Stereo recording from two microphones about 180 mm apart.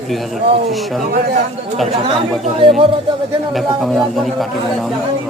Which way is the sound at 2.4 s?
30° right (ahead or behind).